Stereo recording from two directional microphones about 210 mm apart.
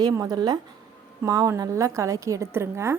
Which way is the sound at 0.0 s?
15° right (ahead or behind).